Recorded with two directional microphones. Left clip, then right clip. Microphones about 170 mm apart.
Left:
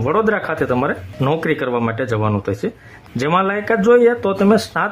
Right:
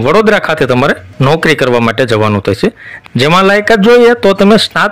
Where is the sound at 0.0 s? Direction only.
35° right (ahead or behind).